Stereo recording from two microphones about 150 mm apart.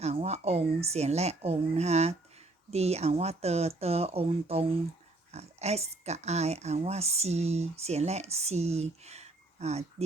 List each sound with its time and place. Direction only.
0.0 s speech: 45° right (ahead or behind)